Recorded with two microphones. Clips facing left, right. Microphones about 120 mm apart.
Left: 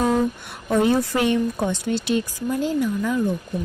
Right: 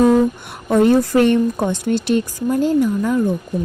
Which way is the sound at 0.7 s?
50° right (ahead or behind).